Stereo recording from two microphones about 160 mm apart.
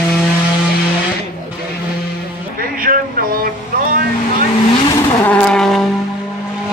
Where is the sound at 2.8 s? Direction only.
60° right (ahead or behind).